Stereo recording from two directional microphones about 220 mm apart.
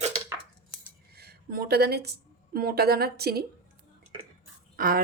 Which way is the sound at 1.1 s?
45° right (ahead or behind).